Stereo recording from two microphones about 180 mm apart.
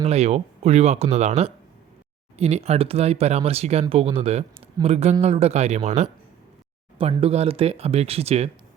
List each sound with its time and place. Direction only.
0.0 s speech: 35° right (ahead or behind)